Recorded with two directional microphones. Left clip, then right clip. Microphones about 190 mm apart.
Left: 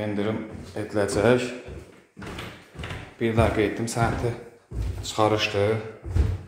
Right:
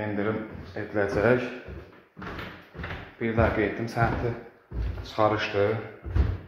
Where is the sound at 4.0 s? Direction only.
20° left (ahead or behind).